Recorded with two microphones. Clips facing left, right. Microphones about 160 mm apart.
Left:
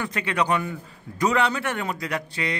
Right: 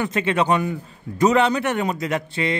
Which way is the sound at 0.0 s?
25° right (ahead or behind).